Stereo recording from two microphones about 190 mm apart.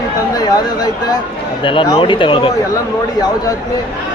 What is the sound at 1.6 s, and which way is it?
Speech, 25° left (ahead or behind).